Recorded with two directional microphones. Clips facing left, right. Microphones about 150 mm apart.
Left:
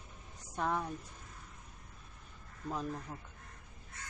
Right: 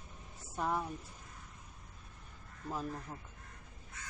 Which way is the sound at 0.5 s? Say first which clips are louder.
Left 1 dB; 5° right (ahead or behind).